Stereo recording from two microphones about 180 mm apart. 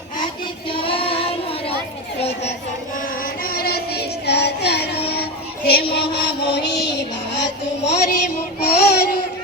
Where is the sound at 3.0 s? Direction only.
50° left (ahead or behind); by 7.0 s 70° left (ahead or behind).